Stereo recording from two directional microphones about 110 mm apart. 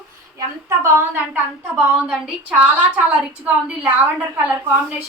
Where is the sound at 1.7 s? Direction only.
10° right (ahead or behind).